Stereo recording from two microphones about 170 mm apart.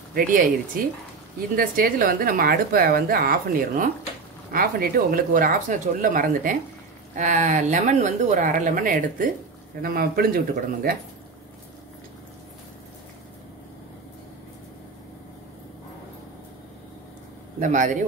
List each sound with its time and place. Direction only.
0.1 s a woman's voice: 55° right (ahead or behind)
17.6 s speech: 50° right (ahead or behind)